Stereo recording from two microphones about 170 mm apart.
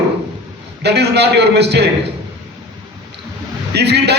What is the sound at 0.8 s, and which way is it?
A man's voice, 80° right.